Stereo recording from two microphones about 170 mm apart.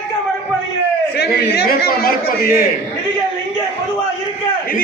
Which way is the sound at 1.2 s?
70° left (ahead or behind).